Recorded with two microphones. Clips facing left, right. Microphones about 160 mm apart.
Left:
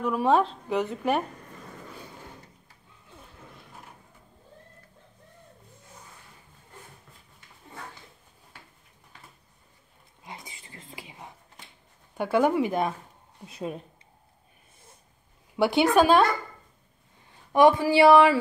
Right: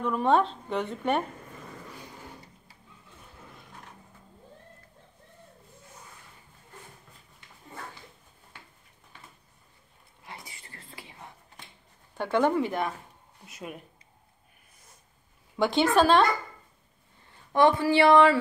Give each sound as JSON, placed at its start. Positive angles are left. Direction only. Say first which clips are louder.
{"t": 0.0, "sound": "speech", "louder": "left 1 dB", "side_deg": 5}
{"t": 10.2, "sound": "whispering", "louder": "left 2 dB", "side_deg": 20}
{"t": 12.2, "sound": "speech", "louder": "left 2 dB", "side_deg": 10}
{"t": 13.5, "sound": "speech", "louder": "left 6 dB", "side_deg": 30}
{"t": 15.5, "sound": "speech", "louder": "left 2 dB", "side_deg": 10}
{"t": 17.5, "sound": "speech", "louder": "left 3 dB", "side_deg": 15}